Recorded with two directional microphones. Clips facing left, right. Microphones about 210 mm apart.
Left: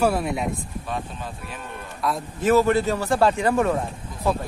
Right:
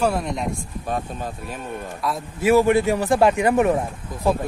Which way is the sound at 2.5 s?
15° right (ahead or behind).